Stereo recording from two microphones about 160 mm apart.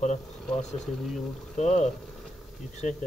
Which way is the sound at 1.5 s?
45° left (ahead or behind).